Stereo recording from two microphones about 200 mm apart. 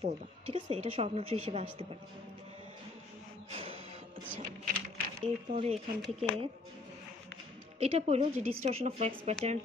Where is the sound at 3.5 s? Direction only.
30° right (ahead or behind).